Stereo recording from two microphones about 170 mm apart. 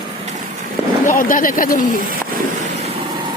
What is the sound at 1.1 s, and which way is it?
Speech, 50° left (ahead or behind).